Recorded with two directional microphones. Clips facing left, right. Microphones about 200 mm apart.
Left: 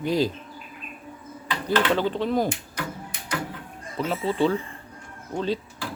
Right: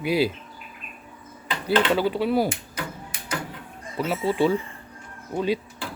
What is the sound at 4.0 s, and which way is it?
Speech, 10° right (ahead or behind).